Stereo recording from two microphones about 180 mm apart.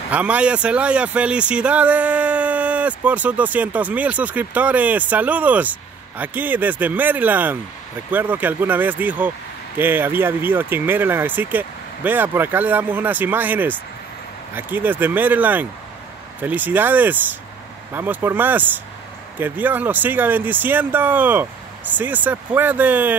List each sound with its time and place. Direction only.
0.1 s speech: 5° right (ahead or behind)